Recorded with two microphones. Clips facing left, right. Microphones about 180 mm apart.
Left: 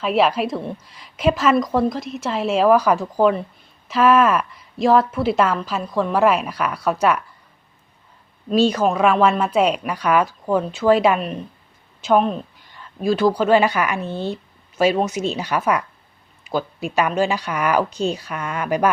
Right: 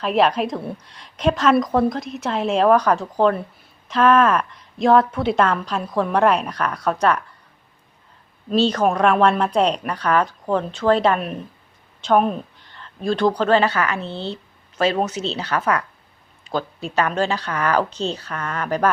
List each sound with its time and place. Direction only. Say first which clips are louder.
0.0 s a woman's voice: even; centre (ahead or behind)
8.5 s a woman's voice: left 1 dB; 10° left (ahead or behind)
11.2 s a woman's voice: left 1 dB; centre (ahead or behind)
12.7 s speech: left 3 dB; 10° left (ahead or behind)